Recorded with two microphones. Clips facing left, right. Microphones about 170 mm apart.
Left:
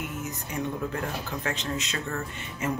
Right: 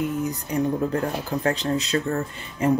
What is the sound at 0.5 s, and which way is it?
Speech, 35° right (ahead or behind).